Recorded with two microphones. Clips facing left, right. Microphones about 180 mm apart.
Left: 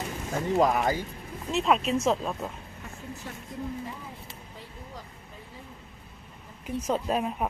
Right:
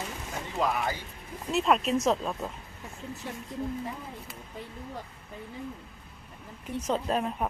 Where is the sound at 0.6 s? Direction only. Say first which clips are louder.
Left 4 dB; 40° left (ahead or behind).